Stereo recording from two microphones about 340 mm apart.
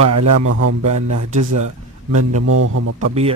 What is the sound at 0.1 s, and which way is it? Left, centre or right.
A man's voice, right.